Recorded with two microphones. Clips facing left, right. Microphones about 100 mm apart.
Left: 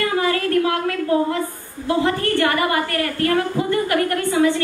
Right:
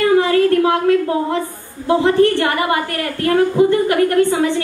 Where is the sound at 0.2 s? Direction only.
25° right (ahead or behind).